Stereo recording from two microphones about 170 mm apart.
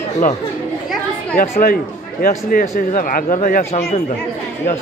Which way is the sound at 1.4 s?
55° left (ahead or behind).